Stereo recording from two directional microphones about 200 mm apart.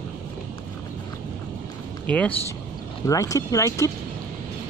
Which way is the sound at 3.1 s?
15° left (ahead or behind).